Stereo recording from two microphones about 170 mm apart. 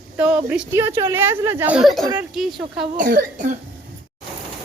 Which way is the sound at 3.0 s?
55° right (ahead or behind).